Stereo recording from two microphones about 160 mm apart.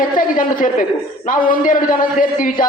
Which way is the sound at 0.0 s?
60° left (ahead or behind).